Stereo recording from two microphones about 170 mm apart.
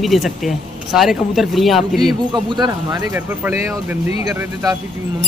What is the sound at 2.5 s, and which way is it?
Speech, 25° right (ahead or behind).